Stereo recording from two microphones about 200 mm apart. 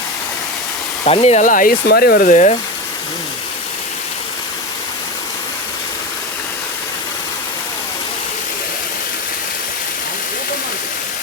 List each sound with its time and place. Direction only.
1.0 s speech: 30° left (ahead or behind)